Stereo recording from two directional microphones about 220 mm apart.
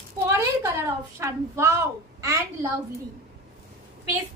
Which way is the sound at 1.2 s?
10° right (ahead or behind).